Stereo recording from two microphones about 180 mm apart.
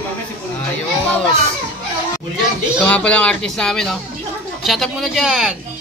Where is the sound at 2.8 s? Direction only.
5° left (ahead or behind).